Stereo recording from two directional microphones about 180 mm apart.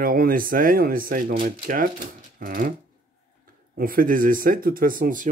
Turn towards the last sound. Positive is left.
turn(degrees=-50)  # may be behind; listen again after turning